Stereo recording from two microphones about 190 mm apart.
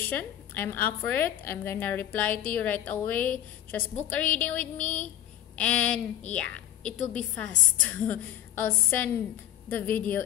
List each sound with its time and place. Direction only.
0.0 s a woman's voice: 10° left (ahead or behind)
4.7 s a sound: 40° left (ahead or behind)
5.6 s a woman's voice: 5° left (ahead or behind)